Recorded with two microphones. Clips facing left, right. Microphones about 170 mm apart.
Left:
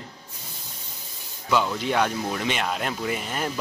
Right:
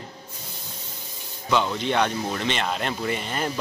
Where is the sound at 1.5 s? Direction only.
5° left (ahead or behind).